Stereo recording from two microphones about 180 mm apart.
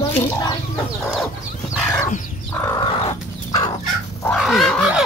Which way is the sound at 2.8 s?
30° left (ahead or behind).